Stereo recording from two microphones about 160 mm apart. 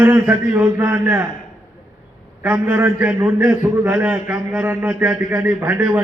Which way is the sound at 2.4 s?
10° right (ahead or behind).